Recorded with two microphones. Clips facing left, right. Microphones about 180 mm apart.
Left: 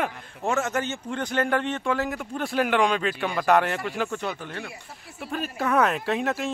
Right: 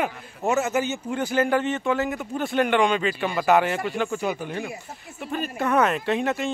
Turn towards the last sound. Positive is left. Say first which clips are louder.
# right 2 dB
turn(degrees=0)  # may be behind; listen again after turning